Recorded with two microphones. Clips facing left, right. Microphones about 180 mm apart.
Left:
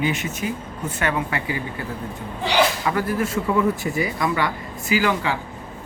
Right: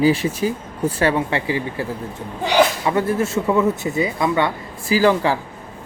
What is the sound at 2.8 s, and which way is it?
Speech, 25° right (ahead or behind).